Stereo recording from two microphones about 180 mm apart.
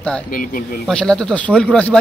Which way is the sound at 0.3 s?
50° left (ahead or behind).